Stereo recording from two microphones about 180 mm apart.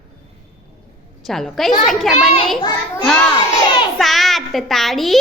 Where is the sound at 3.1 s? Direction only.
5° left (ahead or behind).